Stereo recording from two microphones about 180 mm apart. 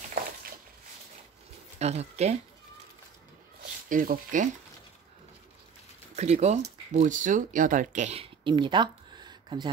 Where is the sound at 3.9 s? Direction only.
50° right (ahead or behind).